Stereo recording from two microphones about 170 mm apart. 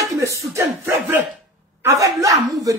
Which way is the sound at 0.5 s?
15° right (ahead or behind).